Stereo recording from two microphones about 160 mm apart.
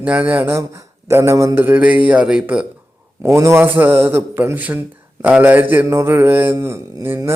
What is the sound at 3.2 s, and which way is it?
Speech, 15° right (ahead or behind).